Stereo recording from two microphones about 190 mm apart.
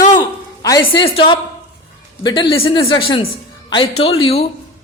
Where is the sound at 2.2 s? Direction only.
20° left (ahead or behind).